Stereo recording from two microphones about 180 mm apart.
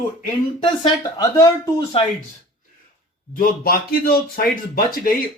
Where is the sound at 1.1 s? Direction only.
20° left (ahead or behind).